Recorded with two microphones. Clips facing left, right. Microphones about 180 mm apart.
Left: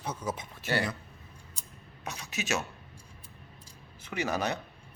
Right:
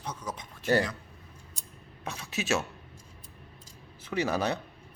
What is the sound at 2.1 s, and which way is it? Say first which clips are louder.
Speech: right 3 dB; 30° right (ahead or behind).